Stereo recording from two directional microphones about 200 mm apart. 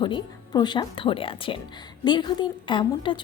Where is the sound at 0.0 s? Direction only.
20° left (ahead or behind).